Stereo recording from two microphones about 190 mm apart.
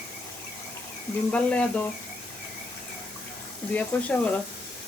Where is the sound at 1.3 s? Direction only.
5° left (ahead or behind).